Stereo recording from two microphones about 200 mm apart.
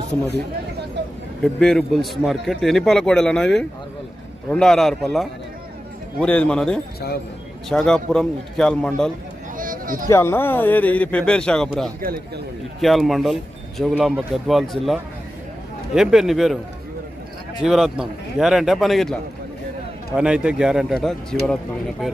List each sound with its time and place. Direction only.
1.4 s a man's voice: 5° left (ahead or behind)
9.6 s a sound: 45° right (ahead or behind)
10.0 s a man's voice: 15° left (ahead or behind)
17.6 s a man's voice: centre (ahead or behind)
20.2 s a man's voice: 5° right (ahead or behind)